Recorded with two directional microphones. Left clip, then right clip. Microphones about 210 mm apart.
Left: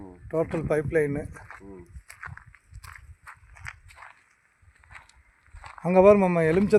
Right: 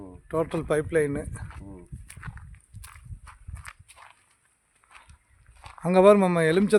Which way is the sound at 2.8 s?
30° right (ahead or behind).